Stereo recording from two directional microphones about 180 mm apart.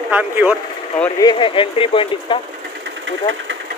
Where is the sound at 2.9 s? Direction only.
90° right.